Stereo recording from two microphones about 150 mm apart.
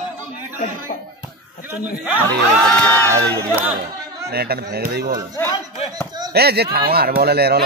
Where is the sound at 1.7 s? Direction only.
10° right (ahead or behind).